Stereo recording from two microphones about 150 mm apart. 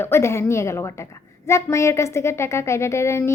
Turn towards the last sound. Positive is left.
turn(degrees=20)  # may be behind; listen again after turning